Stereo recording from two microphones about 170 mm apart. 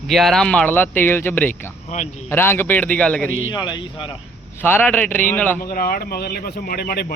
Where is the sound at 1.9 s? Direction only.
50° left (ahead or behind).